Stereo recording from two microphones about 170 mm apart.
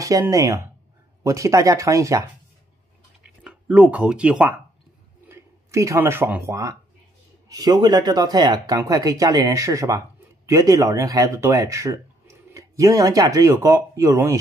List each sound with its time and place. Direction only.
0.0 s speech: 20° right (ahead or behind)
3.3 s speech: 5° right (ahead or behind)
5.3 s speech: 15° right (ahead or behind)